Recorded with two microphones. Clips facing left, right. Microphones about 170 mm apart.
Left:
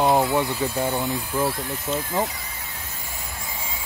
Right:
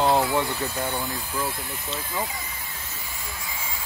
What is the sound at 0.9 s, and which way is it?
Speech, 25° left (ahead or behind).